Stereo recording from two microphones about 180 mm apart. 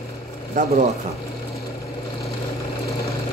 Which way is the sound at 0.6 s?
45° right (ahead or behind).